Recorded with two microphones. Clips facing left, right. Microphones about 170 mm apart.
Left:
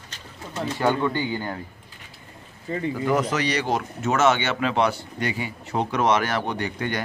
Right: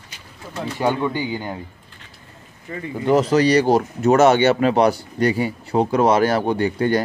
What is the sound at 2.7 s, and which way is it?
Speech, 25° left (ahead or behind).